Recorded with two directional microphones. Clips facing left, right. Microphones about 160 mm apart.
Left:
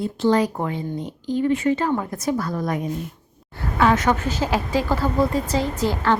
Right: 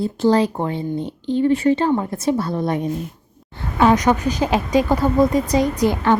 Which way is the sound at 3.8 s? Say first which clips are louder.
Right 3 dB; 15° right (ahead or behind).